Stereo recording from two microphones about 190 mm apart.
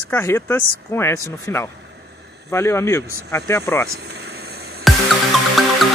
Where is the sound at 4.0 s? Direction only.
60° right (ahead or behind).